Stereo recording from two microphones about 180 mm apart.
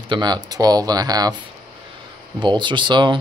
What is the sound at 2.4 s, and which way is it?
Speech, 25° right (ahead or behind).